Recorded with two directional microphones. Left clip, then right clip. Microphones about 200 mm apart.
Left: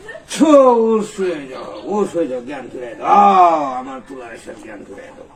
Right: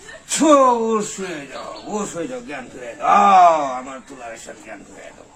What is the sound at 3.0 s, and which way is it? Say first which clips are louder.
Speech: left 1 dB; 40° right (ahead or behind).